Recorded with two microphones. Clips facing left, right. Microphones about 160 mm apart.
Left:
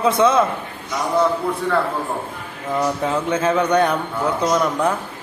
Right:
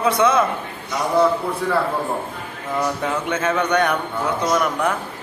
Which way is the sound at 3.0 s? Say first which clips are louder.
Left 3 dB; 30° left (ahead or behind).